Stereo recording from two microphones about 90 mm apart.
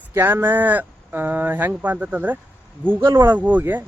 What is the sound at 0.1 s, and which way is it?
Speech, 30° right (ahead or behind).